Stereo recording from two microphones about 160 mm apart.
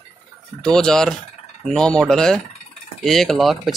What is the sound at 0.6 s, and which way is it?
Speech, 5° left (ahead or behind).